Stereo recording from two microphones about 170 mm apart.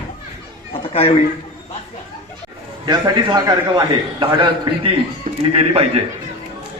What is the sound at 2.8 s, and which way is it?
A man's voice, 25° right (ahead or behind).